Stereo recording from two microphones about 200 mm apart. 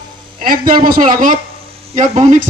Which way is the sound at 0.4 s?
45° right (ahead or behind).